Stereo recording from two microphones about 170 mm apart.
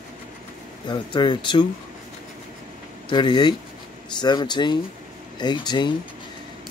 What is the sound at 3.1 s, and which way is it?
Speech, 25° left (ahead or behind).